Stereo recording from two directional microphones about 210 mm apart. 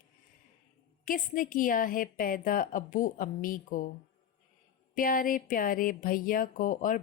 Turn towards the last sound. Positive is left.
turn(degrees=40)  # may be behind; listen again after turning